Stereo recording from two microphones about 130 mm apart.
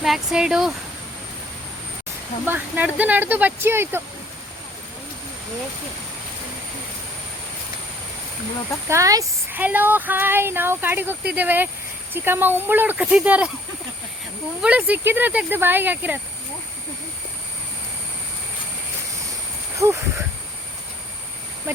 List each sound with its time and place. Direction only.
0.0 s speech: 5° right (ahead or behind)
2.5 s speech: 15° right (ahead or behind)
8.9 s speech: 25° right (ahead or behind)
9.5 s speech: 15° right (ahead or behind)
14.6 s speech: 10° right (ahead or behind)
19.7 s speech: 20° right (ahead or behind)